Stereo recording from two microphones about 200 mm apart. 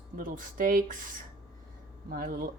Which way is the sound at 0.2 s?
40° right (ahead or behind).